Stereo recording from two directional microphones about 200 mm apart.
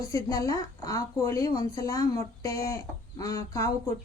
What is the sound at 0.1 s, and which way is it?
A woman's voice, 15° left (ahead or behind).